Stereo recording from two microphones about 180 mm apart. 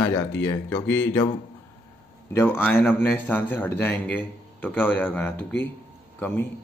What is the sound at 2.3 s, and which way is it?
A man's voice, 10° left (ahead or behind).